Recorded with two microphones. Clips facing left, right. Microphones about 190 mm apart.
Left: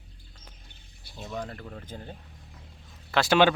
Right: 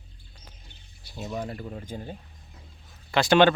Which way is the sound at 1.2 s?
10° right (ahead or behind).